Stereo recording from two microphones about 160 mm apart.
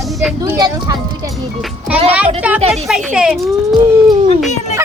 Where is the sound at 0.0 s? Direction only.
Centre (ahead or behind).